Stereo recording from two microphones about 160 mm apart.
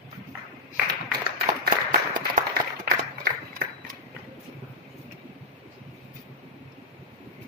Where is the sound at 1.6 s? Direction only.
70° right (ahead or behind).